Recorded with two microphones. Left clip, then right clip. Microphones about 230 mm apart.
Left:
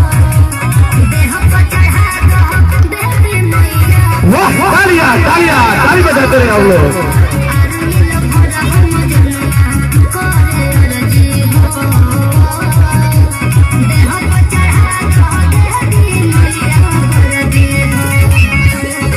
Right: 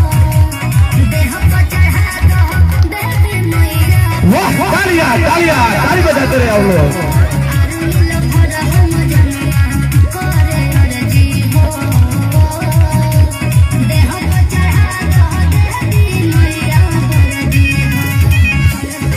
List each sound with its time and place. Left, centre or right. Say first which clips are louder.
4.3 s music: left 3 dB; right
16.9 s music: left 4 dB; right